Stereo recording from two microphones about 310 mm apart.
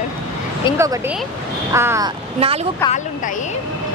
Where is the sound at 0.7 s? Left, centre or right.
Centre.